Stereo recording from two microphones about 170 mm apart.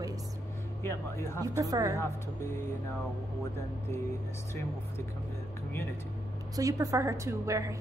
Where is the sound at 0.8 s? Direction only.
15° left (ahead or behind).